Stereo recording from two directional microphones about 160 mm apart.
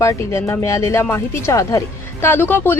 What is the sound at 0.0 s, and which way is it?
Speech, 15° left (ahead or behind).